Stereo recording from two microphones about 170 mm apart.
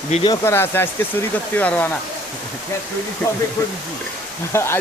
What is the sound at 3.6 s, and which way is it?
Speech, 20° left (ahead or behind).